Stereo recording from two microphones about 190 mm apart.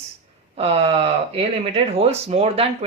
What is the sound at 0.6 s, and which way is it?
Speech, 30° right (ahead or behind).